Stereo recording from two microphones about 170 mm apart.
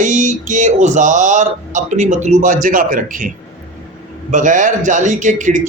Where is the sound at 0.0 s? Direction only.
45° right (ahead or behind).